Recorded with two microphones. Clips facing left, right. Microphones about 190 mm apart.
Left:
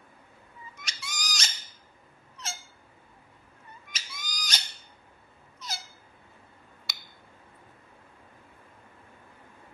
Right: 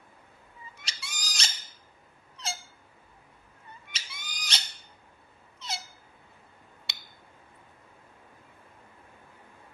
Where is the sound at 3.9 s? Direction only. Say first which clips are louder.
Left 5 dB; 30° right (ahead or behind).